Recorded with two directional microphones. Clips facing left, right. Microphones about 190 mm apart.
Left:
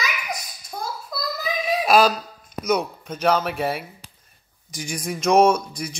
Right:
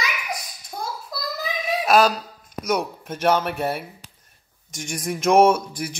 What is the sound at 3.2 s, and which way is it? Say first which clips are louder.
A man's voice: even; centre (ahead or behind).